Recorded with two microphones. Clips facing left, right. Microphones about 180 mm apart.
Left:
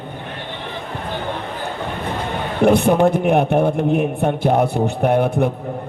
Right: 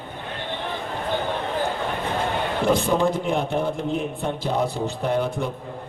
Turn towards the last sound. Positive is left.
turn(degrees=60)  # may be behind; listen again after turning